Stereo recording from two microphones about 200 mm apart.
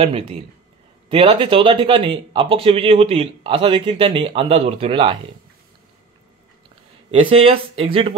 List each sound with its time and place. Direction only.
0.0 s speech: 30° right (ahead or behind)
7.1 s speech: 30° right (ahead or behind)